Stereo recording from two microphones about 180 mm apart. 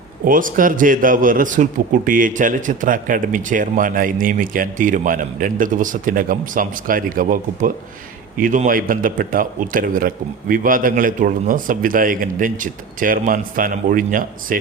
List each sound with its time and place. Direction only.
0.3 s a man's voice: 50° right (ahead or behind)